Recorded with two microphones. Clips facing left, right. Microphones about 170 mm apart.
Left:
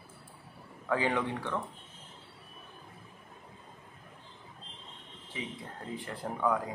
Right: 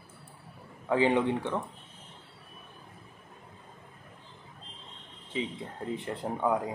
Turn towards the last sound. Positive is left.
turn(degrees=-25)  # may be behind; listen again after turning